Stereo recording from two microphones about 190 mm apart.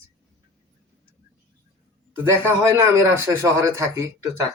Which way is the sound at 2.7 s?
15° right (ahead or behind).